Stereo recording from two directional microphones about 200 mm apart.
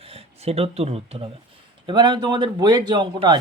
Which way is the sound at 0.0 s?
30° right (ahead or behind).